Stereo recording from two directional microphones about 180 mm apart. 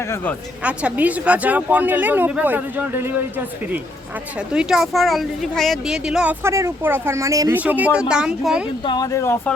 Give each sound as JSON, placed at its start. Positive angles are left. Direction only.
{"t": 0.6, "sound": "speech", "side_deg": -5}
{"t": 4.5, "sound": "speech", "side_deg": -5}
{"t": 8.8, "sound": "speech", "side_deg": 25}